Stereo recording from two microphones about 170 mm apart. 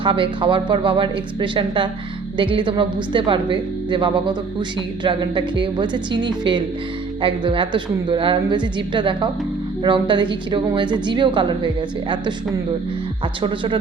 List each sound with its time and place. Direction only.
0.0 s a woman's voice: 30° right (ahead or behind)